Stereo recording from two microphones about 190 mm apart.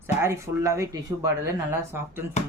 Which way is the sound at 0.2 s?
15° right (ahead or behind).